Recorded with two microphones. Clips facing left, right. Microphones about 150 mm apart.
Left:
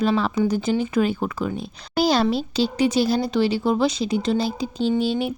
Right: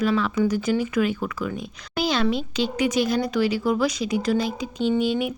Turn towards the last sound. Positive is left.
turn(degrees=30)  # may be behind; listen again after turning